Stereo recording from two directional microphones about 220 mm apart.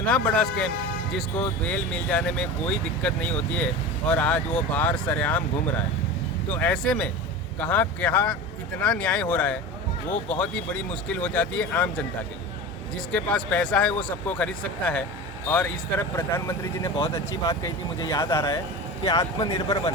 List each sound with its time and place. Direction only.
0.0 s speech: 5° left (ahead or behind)
6.5 s speech: 5° left (ahead or behind)
13.1 s speech: 5° left (ahead or behind)